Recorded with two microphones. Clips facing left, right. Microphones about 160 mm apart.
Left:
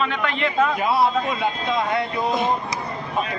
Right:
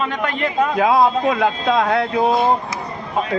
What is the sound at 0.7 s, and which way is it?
Speech, 90° right.